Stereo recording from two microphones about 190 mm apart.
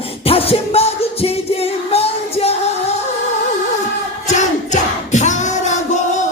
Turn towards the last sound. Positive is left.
turn(degrees=40)  # may be behind; listen again after turning